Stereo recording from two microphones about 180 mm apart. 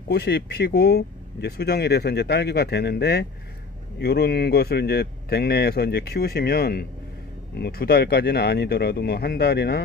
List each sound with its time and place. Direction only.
0.1 s speech: 65° left (ahead or behind)